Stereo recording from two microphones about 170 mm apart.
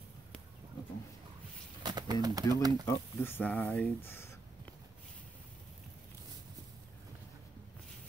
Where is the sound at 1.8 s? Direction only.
25° right (ahead or behind).